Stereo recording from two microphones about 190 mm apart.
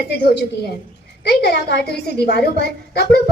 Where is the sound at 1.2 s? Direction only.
60° left (ahead or behind).